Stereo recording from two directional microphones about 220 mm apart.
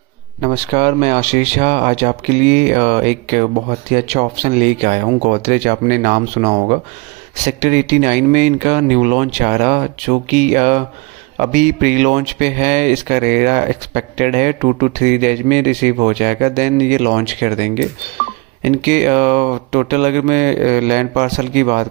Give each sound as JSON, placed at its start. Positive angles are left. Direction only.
{"t": 0.4, "sound": "speech", "side_deg": -30}